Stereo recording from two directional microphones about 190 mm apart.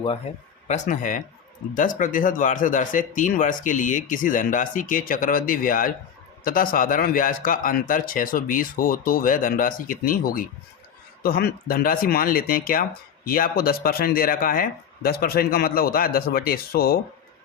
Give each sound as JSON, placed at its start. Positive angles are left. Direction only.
{"t": 0.7, "sound": "speech", "side_deg": 45}